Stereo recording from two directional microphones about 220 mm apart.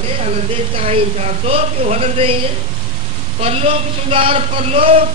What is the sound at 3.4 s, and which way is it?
A man's voice, 25° right (ahead or behind).